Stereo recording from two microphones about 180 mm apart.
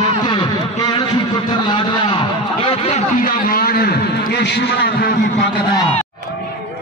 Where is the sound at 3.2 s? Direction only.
50° left (ahead or behind).